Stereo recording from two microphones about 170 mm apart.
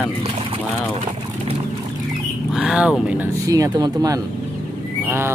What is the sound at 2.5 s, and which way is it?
Speech, 5° right (ahead or behind).